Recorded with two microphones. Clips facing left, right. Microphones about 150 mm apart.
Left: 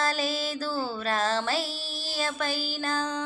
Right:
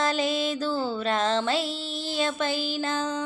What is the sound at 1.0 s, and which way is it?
Music, 25° right (ahead or behind).